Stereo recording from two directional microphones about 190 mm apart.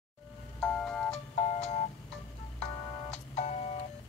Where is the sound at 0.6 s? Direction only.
5° left (ahead or behind).